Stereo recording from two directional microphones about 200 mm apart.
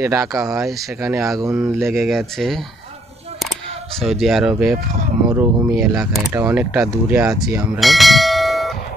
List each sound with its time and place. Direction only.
0.0 s speech: 15° right (ahead or behind)
2.0 s speech: centre (ahead or behind)
4.0 s speech: centre (ahead or behind)